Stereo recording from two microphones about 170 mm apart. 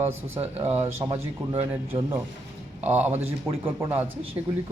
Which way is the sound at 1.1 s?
30° right (ahead or behind).